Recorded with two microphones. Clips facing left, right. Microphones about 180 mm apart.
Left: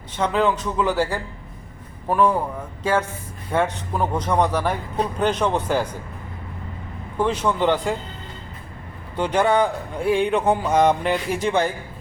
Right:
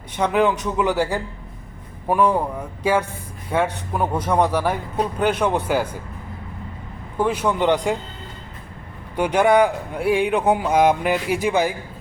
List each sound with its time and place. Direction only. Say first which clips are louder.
0.2 s speech: right 2 dB; 15° right (ahead or behind)
7.2 s speech: right 1 dB; 10° right (ahead or behind)
9.1 s speech: right 3 dB; 10° right (ahead or behind)